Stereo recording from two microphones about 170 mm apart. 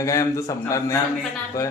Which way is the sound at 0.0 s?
15° left (ahead or behind).